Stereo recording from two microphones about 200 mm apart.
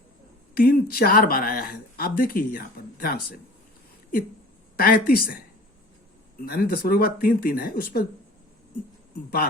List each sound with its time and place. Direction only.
0.5 s speech: 45° left (ahead or behind)
4.8 s speech: 50° left (ahead or behind)
6.4 s speech: 50° left (ahead or behind)